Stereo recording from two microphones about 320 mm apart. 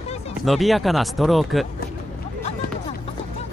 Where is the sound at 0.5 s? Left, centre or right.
Centre.